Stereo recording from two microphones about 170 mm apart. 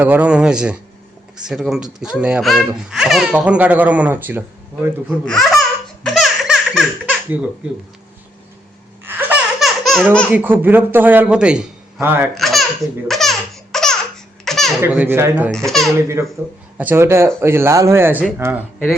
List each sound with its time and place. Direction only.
0.0 s a man's voice: 10° right (ahead or behind)
5.0 s speech: 5° left (ahead or behind)
6.1 s laughter: centre (ahead or behind)
9.0 s laughter: 10° right (ahead or behind)
9.6 s baby laughter: centre (ahead or behind)
10.3 s a man's voice: 10° right (ahead or behind)
12.3 s baby laughter: centre (ahead or behind)
13.7 s laughter: centre (ahead or behind)
14.4 s baby laughter: centre (ahead or behind)
14.8 s a man's voice: 10° right (ahead or behind)
15.5 s speech: centre (ahead or behind)
16.0 s a man's voice: 15° right (ahead or behind)